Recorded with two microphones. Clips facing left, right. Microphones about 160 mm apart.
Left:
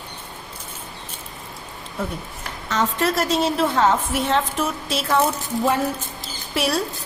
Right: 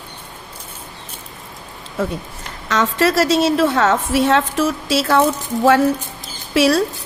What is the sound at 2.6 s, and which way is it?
A woman's voice, 90° right.